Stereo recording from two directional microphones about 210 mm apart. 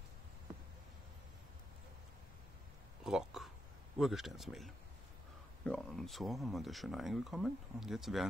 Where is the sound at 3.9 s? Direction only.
Centre (ahead or behind).